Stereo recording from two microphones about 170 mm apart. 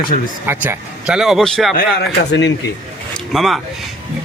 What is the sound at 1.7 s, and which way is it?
Speech, 75° left (ahead or behind).